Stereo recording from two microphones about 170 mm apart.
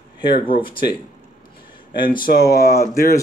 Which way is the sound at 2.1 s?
60° left (ahead or behind).